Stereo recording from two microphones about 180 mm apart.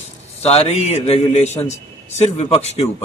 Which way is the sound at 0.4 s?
35° left (ahead or behind).